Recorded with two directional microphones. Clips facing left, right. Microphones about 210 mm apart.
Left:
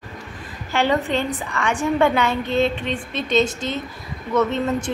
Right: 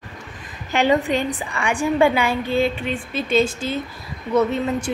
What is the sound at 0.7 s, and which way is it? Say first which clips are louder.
Speech: right 2 dB; 15° right (ahead or behind).